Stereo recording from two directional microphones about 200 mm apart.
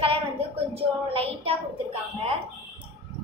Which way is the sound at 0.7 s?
30° right (ahead or behind).